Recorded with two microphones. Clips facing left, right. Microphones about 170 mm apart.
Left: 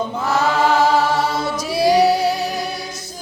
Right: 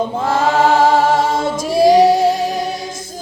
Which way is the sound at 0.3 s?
50° right (ahead or behind).